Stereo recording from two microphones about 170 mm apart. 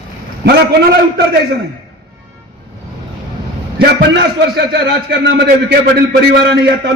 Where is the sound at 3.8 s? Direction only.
90° right.